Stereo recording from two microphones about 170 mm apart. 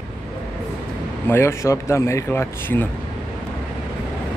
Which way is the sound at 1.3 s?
15° left (ahead or behind).